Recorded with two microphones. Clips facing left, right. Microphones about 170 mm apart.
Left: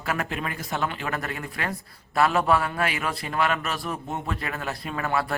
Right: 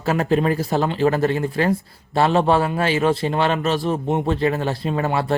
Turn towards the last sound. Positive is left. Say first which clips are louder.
# right 6 dB
turn(degrees=-25)  # may be behind; listen again after turning